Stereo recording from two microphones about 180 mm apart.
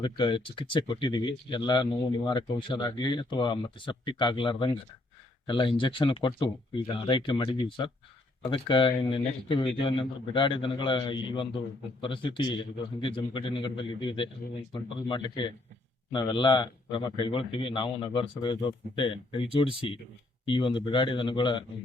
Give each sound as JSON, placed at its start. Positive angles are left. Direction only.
{"t": 0.0, "sound": "a man's voice", "side_deg": 25}